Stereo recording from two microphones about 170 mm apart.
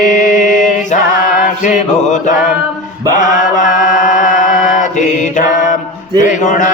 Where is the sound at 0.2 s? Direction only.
45° left (ahead or behind).